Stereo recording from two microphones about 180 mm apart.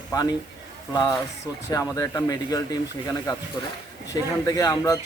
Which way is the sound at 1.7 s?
20° left (ahead or behind).